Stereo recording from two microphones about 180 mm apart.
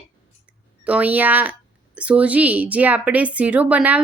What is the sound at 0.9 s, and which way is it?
A woman's voice, 10° right (ahead or behind).